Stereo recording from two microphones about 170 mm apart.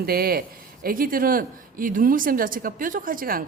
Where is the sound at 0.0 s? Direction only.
60° right (ahead or behind).